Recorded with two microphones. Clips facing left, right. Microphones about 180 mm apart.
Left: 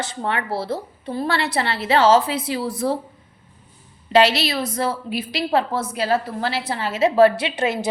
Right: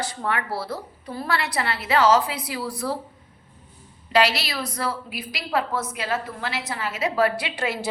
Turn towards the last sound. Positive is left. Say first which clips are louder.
# left 5 dB
turn(degrees=20)  # may be behind; listen again after turning